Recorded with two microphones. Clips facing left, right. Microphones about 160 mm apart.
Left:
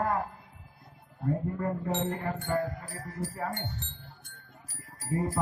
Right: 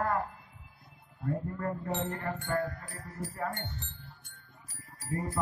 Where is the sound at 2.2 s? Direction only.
15° left (ahead or behind).